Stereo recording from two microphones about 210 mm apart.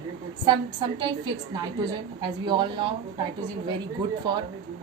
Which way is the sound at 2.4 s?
20° right (ahead or behind).